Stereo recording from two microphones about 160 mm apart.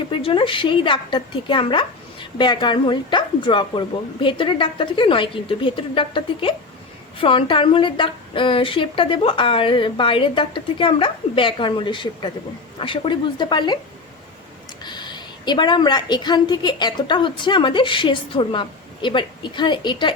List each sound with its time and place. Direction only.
0.1 s a woman's voice: 35° left (ahead or behind)
14.8 s a woman's voice: 25° left (ahead or behind)